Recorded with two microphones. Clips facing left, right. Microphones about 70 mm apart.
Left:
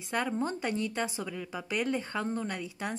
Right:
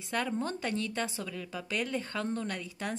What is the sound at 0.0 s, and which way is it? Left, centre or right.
A woman's voice, centre.